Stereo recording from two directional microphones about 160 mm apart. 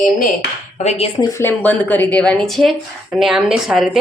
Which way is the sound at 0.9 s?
40° left (ahead or behind).